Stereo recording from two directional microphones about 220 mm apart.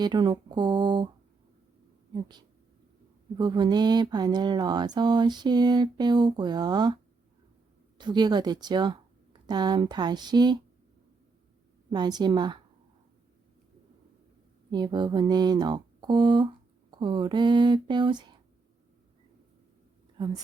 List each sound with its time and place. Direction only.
0.0 s speech: 20° right (ahead or behind)
2.1 s speech: 20° right (ahead or behind)
11.9 s speech: 20° right (ahead or behind)
14.7 s speech: 20° right (ahead or behind)
20.2 s speech: 20° right (ahead or behind)